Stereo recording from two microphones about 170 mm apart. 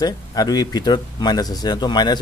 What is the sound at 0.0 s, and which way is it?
Speech, 20° left (ahead or behind).